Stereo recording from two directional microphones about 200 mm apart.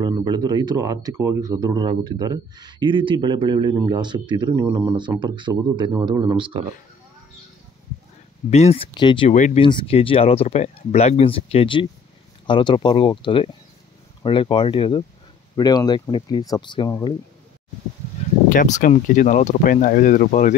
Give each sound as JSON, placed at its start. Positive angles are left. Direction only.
{"t": 0.0, "sound": "speech", "side_deg": -20}
{"t": 8.5, "sound": "speech", "side_deg": 30}
{"t": 9.3, "sound": "speech", "side_deg": 35}
{"t": 18.5, "sound": "speech", "side_deg": 40}